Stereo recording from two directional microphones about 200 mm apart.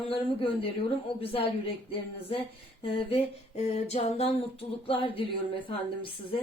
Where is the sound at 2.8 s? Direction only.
30° left (ahead or behind).